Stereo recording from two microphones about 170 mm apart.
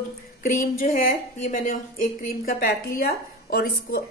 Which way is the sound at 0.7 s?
55° left (ahead or behind).